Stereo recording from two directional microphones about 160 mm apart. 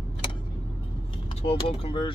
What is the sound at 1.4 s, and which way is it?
Speech, 35° left (ahead or behind).